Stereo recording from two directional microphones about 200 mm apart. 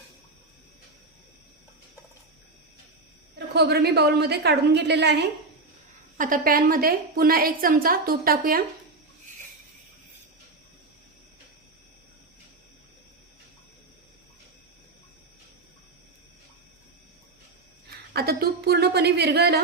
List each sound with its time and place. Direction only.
3.3 s a woman's voice: 55° right (ahead or behind)
6.1 s a woman's voice: 40° right (ahead or behind)
18.1 s a woman's voice: 50° right (ahead or behind)